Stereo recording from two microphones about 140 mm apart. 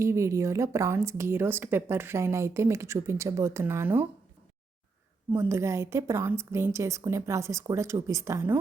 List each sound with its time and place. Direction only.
0.0 s a woman's voice: 20° right (ahead or behind)
5.3 s a woman's voice: 15° right (ahead or behind)